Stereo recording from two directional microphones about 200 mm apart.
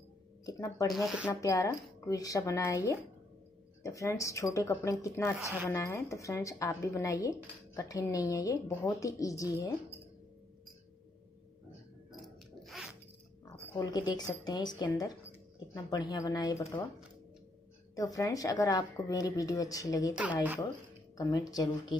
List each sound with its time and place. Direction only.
0.5 s a woman's voice: 15° left (ahead or behind)
0.9 s speech: 5° right (ahead or behind)
1.3 s a woman's voice: 15° left (ahead or behind)
5.4 s speech: 10° right (ahead or behind)
5.7 s a woman's voice: 15° left (ahead or behind)
12.2 s a sound: centre (ahead or behind)
13.7 s a woman's voice: 20° left (ahead or behind)
17.9 s a woman's voice: 15° left (ahead or behind)
21.2 s speech: 20° left (ahead or behind)